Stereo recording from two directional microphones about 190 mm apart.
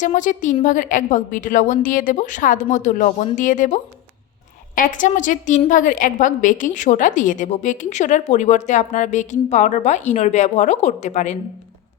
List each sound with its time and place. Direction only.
0.0 s a woman's voice: 40° left (ahead or behind)